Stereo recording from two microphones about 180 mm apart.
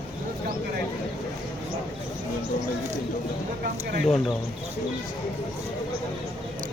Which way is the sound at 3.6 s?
60° right (ahead or behind).